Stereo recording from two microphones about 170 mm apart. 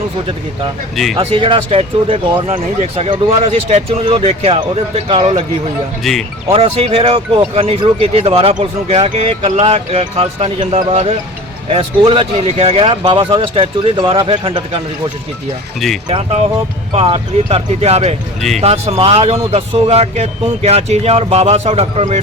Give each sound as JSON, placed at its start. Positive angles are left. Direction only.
{"t": 1.1, "sound": "speech", "side_deg": -35}
{"t": 6.0, "sound": "speech", "side_deg": 0}
{"t": 6.5, "sound": "speech", "side_deg": -35}
{"t": 16.0, "sound": "speech", "side_deg": -35}